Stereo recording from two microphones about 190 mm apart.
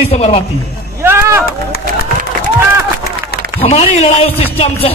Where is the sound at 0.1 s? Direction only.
35° left (ahead or behind).